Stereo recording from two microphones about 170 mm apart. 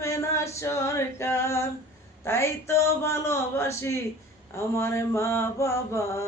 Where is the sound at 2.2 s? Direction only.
15° left (ahead or behind).